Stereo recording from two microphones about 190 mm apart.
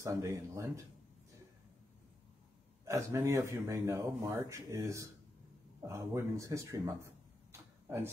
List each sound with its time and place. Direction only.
0.0 s speech: 15° right (ahead or behind)
2.8 s speech: 15° right (ahead or behind)